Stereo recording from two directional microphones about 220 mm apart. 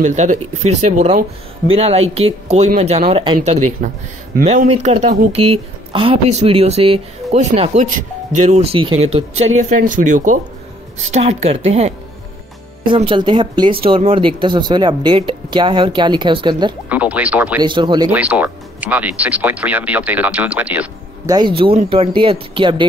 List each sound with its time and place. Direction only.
0.0 s speech: 30° right (ahead or behind)
5.3 s speech: 90° right
5.9 s speech: 25° right (ahead or behind)
9.6 s speech: 35° right (ahead or behind); by 16.7 s 20° right (ahead or behind)
16.9 s speech: 5° right (ahead or behind)
17.6 s speech: 20° right (ahead or behind)
18.1 s speech: 5° right (ahead or behind)
21.4 s speech: 25° right (ahead or behind)